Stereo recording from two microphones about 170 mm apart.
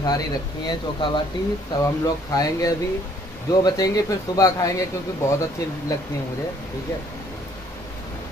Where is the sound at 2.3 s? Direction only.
20° left (ahead or behind).